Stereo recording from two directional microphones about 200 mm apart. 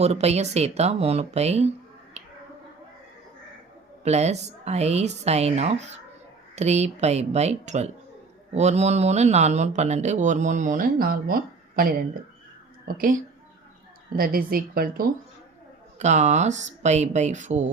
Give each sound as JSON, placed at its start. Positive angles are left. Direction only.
{"t": 0.0, "sound": "speech", "side_deg": -30}
{"t": 2.2, "sound": "finger snapping", "side_deg": -35}
{"t": 4.0, "sound": "a woman's voice", "side_deg": -35}
{"t": 16.0, "sound": "speech", "side_deg": -35}